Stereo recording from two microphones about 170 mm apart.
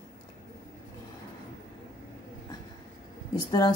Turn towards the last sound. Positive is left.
turn(degrees=25)  # may be behind; listen again after turning